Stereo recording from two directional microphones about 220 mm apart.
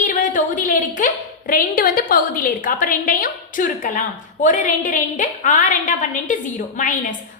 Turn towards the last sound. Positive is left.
turn(degrees=35)  # may be behind; listen again after turning